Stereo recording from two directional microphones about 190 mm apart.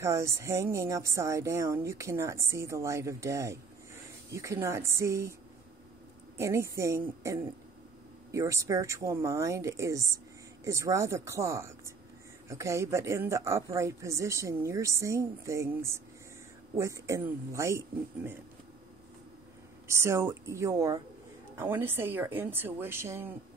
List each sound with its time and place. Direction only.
0.0 s speech: 15° right (ahead or behind)
6.3 s speech: 15° right (ahead or behind)
19.9 s speech: 15° right (ahead or behind)